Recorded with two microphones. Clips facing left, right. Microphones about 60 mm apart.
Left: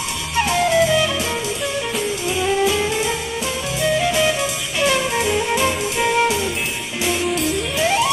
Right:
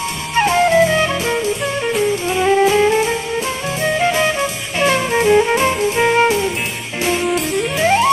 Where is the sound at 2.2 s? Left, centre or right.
Right.